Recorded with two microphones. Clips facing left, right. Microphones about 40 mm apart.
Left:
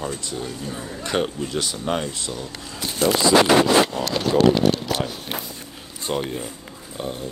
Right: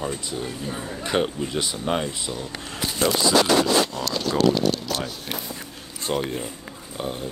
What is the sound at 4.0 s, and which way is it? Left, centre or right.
Speech, left.